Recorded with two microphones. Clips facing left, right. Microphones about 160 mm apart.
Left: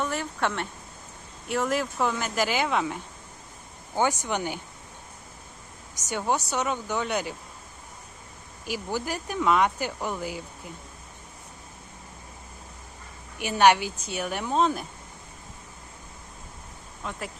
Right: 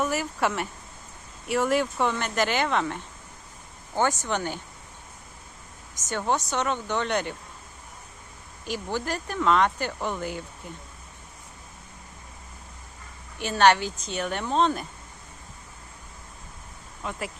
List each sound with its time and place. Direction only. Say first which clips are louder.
0.0 s speech: right 2 dB; 5° right (ahead or behind); by 4.6 s 10° left (ahead or behind)
5.9 s speech: even; 10° left (ahead or behind)
8.6 s speech: even; 10° left (ahead or behind)
13.4 s speech: even; 10° left (ahead or behind)
17.0 s speech: right 2 dB; centre (ahead or behind)